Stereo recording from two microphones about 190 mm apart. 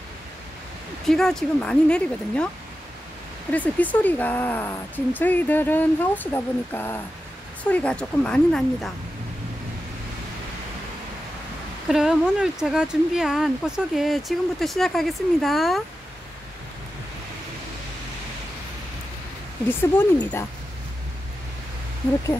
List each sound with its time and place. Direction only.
1.0 s speech: centre (ahead or behind)
3.5 s speech: 10° left (ahead or behind)
11.9 s speech: 5° right (ahead or behind)
19.7 s speech: 10° left (ahead or behind)